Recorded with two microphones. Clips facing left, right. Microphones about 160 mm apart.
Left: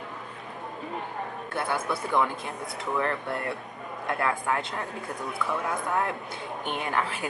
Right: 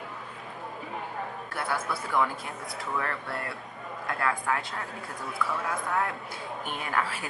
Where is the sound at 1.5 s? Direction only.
20° left (ahead or behind).